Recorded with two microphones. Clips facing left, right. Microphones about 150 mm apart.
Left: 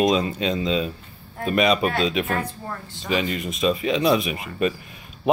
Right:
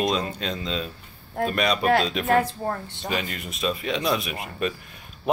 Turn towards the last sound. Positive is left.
turn(degrees=0)  # may be behind; listen again after turning